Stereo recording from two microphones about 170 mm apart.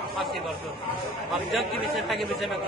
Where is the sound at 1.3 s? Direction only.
Centre (ahead or behind).